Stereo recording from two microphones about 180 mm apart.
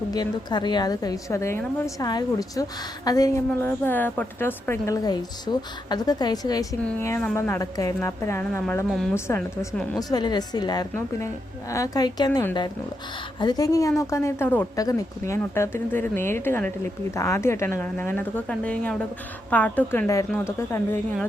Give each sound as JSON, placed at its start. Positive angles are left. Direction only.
{"t": 0.1, "sound": "a woman's voice", "side_deg": 25}
{"t": 10.0, "sound": "a woman's voice", "side_deg": 20}